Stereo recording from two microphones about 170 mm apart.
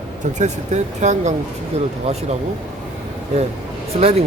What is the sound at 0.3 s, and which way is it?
Speech, 45° right (ahead or behind).